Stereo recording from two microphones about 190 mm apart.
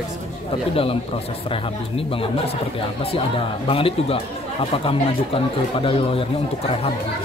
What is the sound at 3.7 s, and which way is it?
Speech, 30° left (ahead or behind).